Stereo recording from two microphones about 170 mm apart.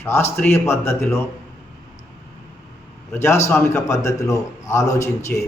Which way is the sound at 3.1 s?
15° left (ahead or behind).